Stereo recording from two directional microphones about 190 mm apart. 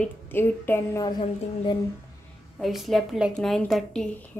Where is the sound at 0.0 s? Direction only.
10° left (ahead or behind).